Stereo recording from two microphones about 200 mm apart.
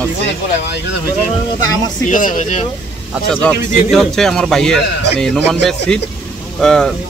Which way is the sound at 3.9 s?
Centre (ahead or behind).